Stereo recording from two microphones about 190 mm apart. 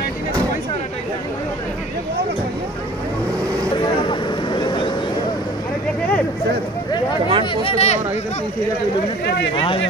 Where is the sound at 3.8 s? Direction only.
25° left (ahead or behind).